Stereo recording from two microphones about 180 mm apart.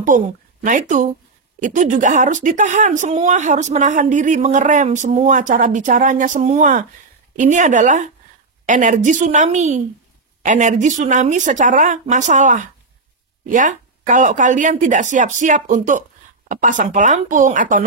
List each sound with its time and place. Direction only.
0.0 s a woman's voice: 45° right (ahead or behind)